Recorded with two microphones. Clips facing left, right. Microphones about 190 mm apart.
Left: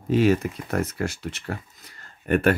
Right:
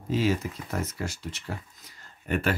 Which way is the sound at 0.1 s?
60° left (ahead or behind).